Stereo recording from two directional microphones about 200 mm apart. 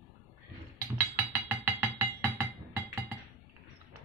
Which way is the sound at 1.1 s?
10° right (ahead or behind).